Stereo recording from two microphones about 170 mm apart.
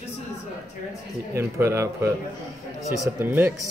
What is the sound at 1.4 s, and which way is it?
Speech, 15° right (ahead or behind).